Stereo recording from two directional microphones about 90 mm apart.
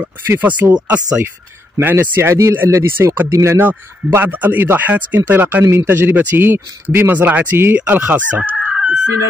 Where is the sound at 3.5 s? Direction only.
20° right (ahead or behind).